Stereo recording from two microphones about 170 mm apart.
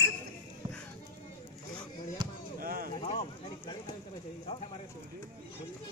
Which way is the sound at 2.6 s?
60° right (ahead or behind).